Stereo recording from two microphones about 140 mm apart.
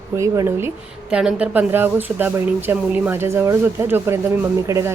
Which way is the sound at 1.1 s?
5° right (ahead or behind).